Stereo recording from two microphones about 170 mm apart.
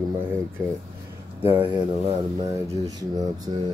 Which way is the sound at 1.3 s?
10° right (ahead or behind).